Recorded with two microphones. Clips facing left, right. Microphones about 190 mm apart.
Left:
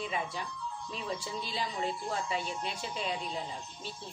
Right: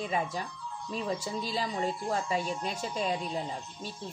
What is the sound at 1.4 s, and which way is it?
A woman's voice, 40° right (ahead or behind).